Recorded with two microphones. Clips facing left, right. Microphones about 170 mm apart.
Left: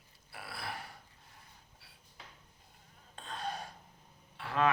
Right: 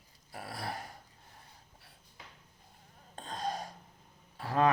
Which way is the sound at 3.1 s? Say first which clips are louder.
Right 3 dB; 40° right (ahead or behind).